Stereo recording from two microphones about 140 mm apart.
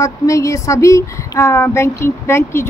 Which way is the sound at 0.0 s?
20° left (ahead or behind).